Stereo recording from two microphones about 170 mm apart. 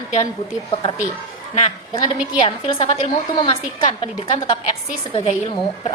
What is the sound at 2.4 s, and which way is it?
A woman's voice, 30° left (ahead or behind).